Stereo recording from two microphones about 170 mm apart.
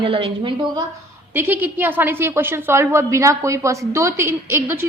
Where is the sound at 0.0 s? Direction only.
30° right (ahead or behind).